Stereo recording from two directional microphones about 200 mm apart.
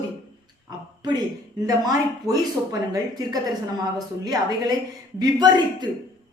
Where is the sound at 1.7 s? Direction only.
20° right (ahead or behind).